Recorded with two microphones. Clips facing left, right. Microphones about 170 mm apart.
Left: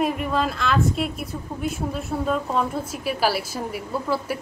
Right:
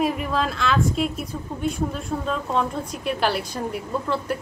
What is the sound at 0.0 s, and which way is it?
Speech, centre (ahead or behind).